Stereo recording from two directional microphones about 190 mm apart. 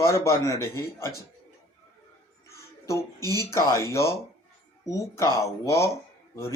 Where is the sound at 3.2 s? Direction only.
20° right (ahead or behind).